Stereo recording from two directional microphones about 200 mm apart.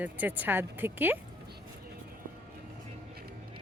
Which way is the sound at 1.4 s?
55° right (ahead or behind).